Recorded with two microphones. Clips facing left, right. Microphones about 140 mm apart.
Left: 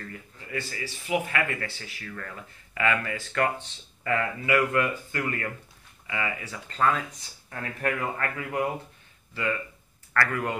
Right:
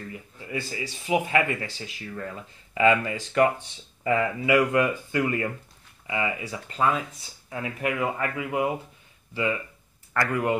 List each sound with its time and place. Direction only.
0.1 s speech: 15° right (ahead or behind)